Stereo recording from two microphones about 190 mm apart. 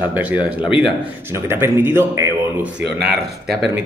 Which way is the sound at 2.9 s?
55° right (ahead or behind).